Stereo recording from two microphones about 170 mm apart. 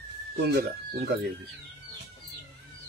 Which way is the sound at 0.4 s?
65° right (ahead or behind).